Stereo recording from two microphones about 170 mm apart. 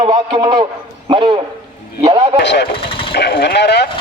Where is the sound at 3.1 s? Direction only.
75° left (ahead or behind).